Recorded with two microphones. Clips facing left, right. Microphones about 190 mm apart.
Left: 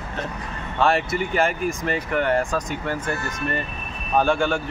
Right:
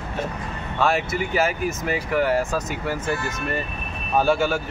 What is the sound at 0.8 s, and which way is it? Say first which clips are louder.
Speech: left 1 dB; centre (ahead or behind).